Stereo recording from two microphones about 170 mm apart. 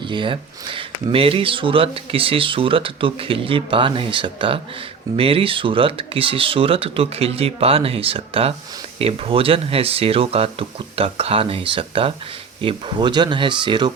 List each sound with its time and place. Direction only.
0.0 s speech: 30° right (ahead or behind)